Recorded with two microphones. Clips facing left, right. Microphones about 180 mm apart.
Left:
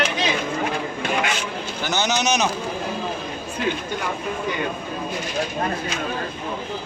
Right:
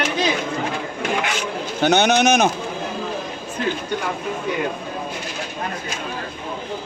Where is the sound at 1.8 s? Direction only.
60° right (ahead or behind).